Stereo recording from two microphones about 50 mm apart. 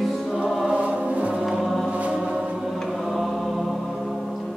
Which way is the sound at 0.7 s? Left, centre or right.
Right.